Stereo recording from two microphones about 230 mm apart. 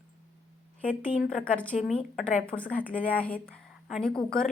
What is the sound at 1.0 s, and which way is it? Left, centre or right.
Speech, left.